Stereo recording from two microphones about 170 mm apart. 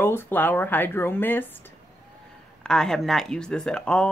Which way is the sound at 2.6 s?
5° left (ahead or behind).